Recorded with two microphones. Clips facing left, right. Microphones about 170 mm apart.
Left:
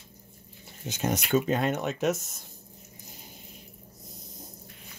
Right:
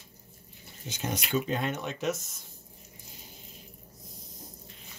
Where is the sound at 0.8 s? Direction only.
45° left (ahead or behind).